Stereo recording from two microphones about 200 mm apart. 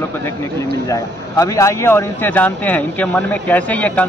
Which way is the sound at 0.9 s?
15° left (ahead or behind).